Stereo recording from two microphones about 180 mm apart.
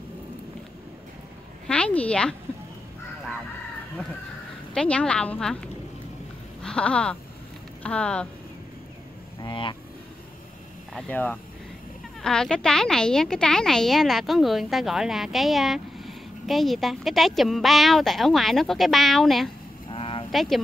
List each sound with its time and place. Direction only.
1.7 s a woman's voice: 5° left (ahead or behind)
4.7 s a woman's voice: 5° left (ahead or behind)
9.4 s speech: 25° left (ahead or behind)
10.9 s a woman's voice: 5° left (ahead or behind)
19.9 s a sound: 30° left (ahead or behind)
20.2 s speech: centre (ahead or behind)